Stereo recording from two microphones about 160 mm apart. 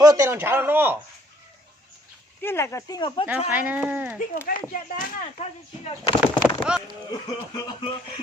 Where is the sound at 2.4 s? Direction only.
15° left (ahead or behind).